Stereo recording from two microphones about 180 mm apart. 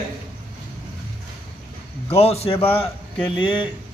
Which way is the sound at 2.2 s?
35° left (ahead or behind).